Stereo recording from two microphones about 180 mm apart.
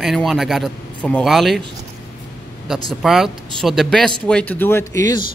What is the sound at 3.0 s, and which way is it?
Speech, centre (ahead or behind).